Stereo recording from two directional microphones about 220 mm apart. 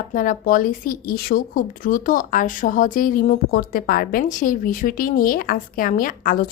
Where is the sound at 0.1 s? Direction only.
40° left (ahead or behind).